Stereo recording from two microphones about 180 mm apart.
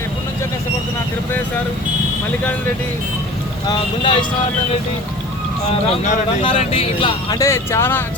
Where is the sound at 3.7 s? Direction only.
25° left (ahead or behind).